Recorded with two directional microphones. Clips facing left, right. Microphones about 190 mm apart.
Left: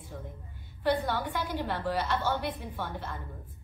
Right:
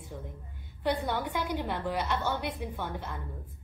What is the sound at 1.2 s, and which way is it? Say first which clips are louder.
A woman's voice: right 1 dB; 15° right (ahead or behind).